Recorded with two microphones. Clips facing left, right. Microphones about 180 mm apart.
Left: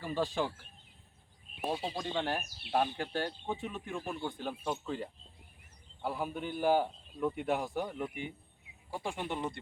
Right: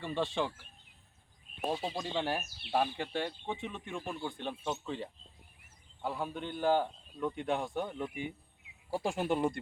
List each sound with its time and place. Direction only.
0.0 s speech: 5° left (ahead or behind)
1.7 s speech: centre (ahead or behind)
8.9 s speech: 45° right (ahead or behind)